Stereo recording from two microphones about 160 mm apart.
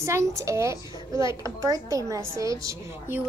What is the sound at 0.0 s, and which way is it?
A child's voice, 20° right (ahead or behind).